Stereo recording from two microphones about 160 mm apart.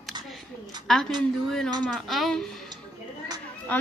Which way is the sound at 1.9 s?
Centre (ahead or behind).